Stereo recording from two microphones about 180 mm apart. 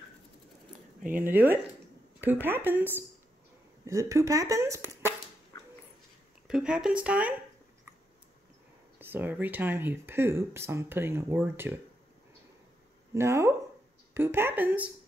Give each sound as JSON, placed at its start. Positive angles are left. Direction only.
{"t": 1.1, "sound": "speech", "side_deg": -10}
{"t": 6.4, "sound": "speech", "side_deg": -5}
{"t": 9.1, "sound": "speech", "side_deg": -10}
{"t": 13.1, "sound": "speech", "side_deg": -15}